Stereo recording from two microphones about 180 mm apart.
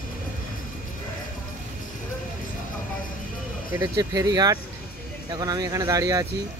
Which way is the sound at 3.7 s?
15° right (ahead or behind).